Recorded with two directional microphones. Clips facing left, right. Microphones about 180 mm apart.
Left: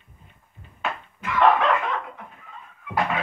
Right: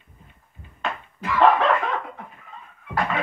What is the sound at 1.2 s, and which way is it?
Dog, 35° right (ahead or behind).